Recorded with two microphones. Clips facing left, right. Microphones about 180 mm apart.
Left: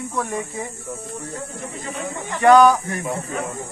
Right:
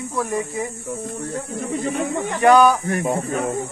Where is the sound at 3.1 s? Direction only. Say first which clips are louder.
Right 3 dB; 60° right (ahead or behind).